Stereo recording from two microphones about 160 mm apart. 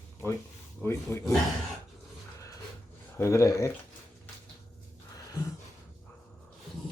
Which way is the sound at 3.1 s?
15° left (ahead or behind).